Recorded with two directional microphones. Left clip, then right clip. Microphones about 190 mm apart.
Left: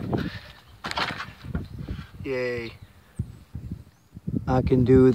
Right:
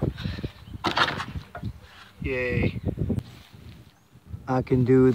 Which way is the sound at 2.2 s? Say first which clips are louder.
Even; 5° left (ahead or behind).